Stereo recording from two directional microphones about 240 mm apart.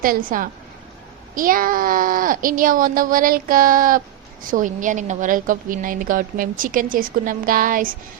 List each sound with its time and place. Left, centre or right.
0.0 s a woman's voice: right